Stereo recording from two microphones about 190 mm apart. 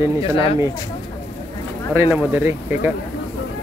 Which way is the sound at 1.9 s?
10° right (ahead or behind).